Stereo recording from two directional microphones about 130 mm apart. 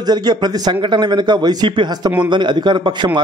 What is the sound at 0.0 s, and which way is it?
A man's voice, 35° right (ahead or behind).